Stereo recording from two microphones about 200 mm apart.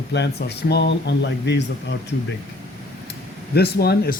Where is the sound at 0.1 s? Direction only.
55° left (ahead or behind).